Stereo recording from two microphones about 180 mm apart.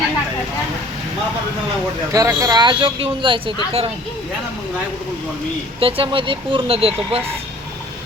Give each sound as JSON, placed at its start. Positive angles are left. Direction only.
{"t": 2.1, "sound": "speech", "side_deg": -20}
{"t": 5.8, "sound": "speech", "side_deg": -30}